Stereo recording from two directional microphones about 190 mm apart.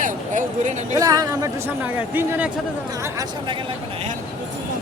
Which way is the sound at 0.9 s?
20° right (ahead or behind).